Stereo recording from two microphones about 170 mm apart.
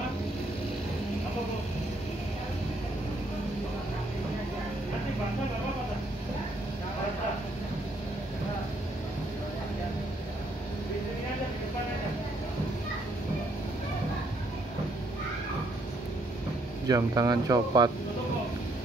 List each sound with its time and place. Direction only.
16.8 s speech: 20° right (ahead or behind)